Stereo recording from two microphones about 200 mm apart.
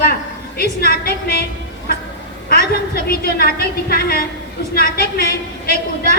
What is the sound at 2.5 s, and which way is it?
A woman's voice, 50° left (ahead or behind).